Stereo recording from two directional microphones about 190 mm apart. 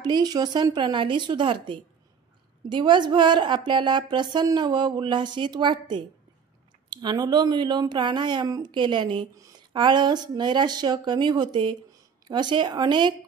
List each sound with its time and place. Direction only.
0.0 s speech: 20° right (ahead or behind)